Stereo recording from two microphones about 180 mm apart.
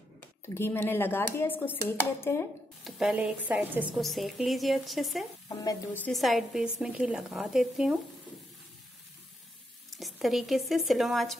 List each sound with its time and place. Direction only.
0.6 s speech: 10° left (ahead or behind)
2.8 s a woman's voice: 5° right (ahead or behind)
5.5 s speech: 20° left (ahead or behind)
6.0 s a woman's voice: centre (ahead or behind)
9.9 s speech: centre (ahead or behind)